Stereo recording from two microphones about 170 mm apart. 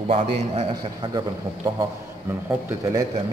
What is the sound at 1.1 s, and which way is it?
A man's voice, 20° right (ahead or behind).